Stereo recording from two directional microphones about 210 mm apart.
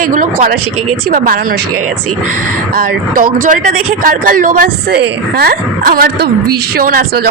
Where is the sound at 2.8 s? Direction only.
40° right (ahead or behind).